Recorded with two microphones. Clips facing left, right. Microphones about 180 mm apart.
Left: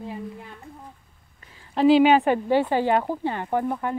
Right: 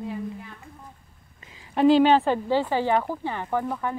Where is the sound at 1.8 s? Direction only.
10° left (ahead or behind).